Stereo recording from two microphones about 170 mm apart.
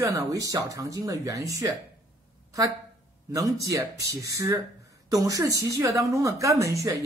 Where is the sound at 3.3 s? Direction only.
20° right (ahead or behind).